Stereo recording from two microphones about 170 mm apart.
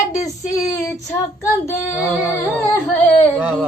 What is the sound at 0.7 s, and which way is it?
Female singing, 20° left (ahead or behind).